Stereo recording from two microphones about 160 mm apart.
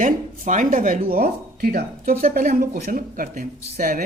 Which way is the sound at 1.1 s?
70° right (ahead or behind).